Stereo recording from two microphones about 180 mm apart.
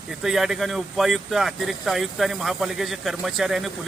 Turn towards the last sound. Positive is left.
turn(degrees=0)  # may be behind; listen again after turning